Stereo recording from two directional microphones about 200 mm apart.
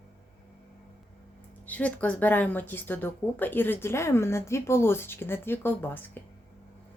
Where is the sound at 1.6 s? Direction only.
5° left (ahead or behind).